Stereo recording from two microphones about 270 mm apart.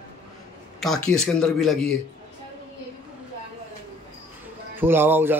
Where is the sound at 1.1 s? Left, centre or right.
Centre.